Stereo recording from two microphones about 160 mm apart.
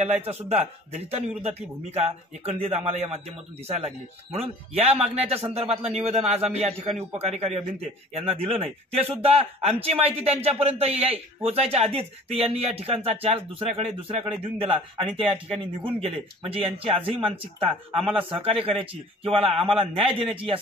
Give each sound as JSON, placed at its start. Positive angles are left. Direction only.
{"t": 0.0, "sound": "a man's voice", "side_deg": -40}